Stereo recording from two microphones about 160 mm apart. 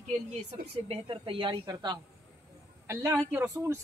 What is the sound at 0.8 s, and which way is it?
Speech, 35° right (ahead or behind).